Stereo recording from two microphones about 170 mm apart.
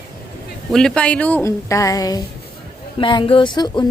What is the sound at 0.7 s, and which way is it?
A woman's voice, 5° left (ahead or behind).